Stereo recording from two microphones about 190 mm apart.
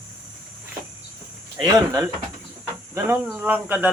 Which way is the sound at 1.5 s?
20° right (ahead or behind).